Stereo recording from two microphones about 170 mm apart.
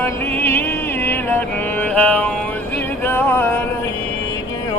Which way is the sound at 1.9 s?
10° left (ahead or behind).